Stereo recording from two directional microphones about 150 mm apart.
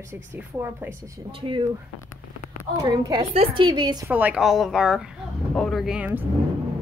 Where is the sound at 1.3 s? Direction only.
35° right (ahead or behind).